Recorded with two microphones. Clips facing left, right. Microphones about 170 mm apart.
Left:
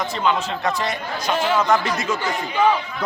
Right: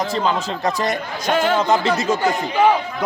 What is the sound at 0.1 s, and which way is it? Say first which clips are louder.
Speech: right 1 dB; 35° right (ahead or behind).